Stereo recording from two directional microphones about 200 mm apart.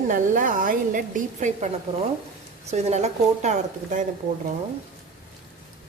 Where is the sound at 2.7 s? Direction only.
35° right (ahead or behind).